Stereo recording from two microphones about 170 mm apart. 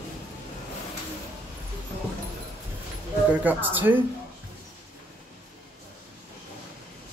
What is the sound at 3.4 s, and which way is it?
Speech, 10° right (ahead or behind).